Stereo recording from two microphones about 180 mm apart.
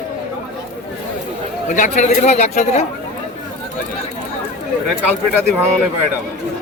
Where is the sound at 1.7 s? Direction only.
45° left (ahead or behind).